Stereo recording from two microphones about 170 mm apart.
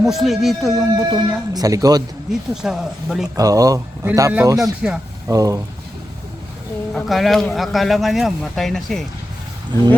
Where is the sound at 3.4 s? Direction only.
20° right (ahead or behind).